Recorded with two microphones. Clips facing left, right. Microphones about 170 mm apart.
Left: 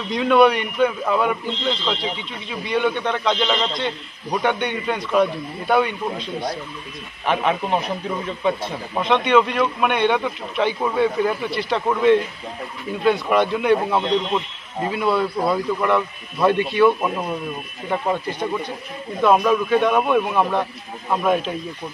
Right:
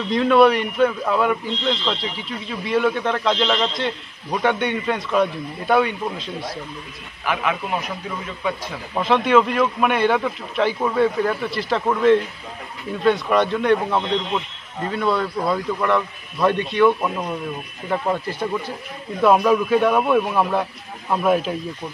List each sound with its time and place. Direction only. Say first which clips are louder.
0.1 s speech: right 1 dB; centre (ahead or behind)
7.2 s speech: left 3 dB; 30° left (ahead or behind)
8.9 s speech: right 1 dB; 5° right (ahead or behind)